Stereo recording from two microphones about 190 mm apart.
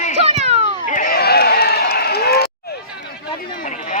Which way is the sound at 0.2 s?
35° right (ahead or behind).